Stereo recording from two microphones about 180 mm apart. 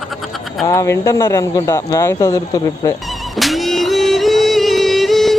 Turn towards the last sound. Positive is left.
turn(degrees=0)  # may be behind; listen again after turning